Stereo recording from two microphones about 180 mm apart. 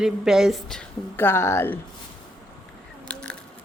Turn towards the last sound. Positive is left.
turn(degrees=5)  # may be behind; listen again after turning